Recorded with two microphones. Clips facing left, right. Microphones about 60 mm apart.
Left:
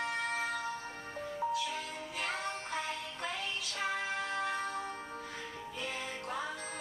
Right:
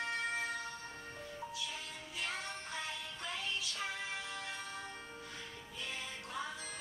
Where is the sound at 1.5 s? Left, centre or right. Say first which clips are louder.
Left 9 dB; left.